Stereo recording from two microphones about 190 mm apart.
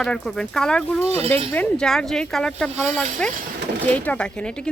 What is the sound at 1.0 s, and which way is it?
Speech, 35° right (ahead or behind).